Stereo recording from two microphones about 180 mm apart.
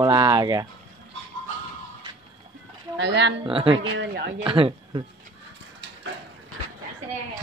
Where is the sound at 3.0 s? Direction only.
75° right (ahead or behind).